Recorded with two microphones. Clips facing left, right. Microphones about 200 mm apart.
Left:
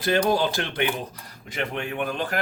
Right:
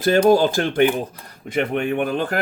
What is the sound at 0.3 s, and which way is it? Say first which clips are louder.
Speech: right 8 dB; 45° right (ahead or behind).